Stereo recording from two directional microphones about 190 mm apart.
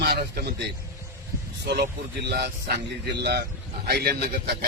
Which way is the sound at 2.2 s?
60° right (ahead or behind).